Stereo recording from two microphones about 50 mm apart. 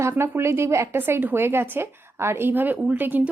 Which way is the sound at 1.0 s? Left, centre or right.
Right.